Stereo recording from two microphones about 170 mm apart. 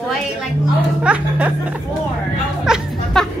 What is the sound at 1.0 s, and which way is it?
Speech, 5° right (ahead or behind).